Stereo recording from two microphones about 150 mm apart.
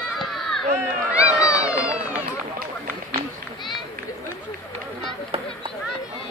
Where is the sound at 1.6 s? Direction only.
10° right (ahead or behind).